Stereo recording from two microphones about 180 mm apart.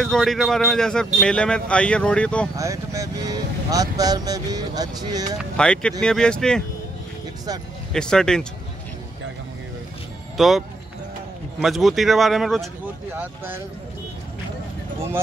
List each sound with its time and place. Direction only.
0.0 s a man's voice: centre (ahead or behind)
2.5 s speech: 15° right (ahead or behind)
5.6 s a man's voice: 5° left (ahead or behind)
7.9 s a man's voice: 5° left (ahead or behind)
10.3 s speech: centre (ahead or behind)
11.6 s a man's voice: centre (ahead or behind)